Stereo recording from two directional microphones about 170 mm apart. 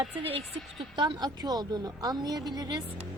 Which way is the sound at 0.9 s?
25° right (ahead or behind).